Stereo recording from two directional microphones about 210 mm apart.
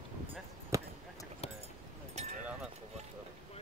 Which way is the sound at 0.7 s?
15° right (ahead or behind).